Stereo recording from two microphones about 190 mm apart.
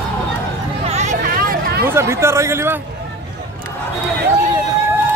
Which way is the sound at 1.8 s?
15° right (ahead or behind).